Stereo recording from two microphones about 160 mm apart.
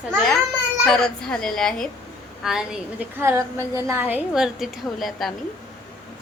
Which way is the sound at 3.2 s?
15° right (ahead or behind).